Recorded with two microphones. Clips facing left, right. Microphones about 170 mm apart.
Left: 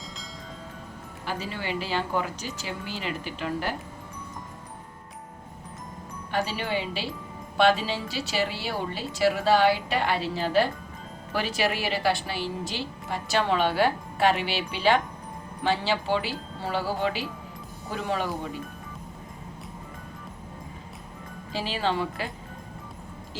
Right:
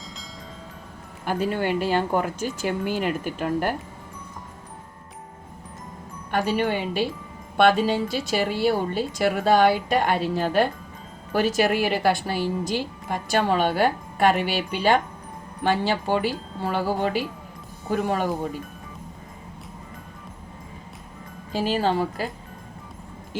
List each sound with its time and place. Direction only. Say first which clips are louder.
1.2 s a woman's voice: right 9 dB; 50° right (ahead or behind)
6.3 s a woman's voice: right 5 dB; 50° right (ahead or behind)
21.5 s a woman's voice: right 5 dB; 45° right (ahead or behind)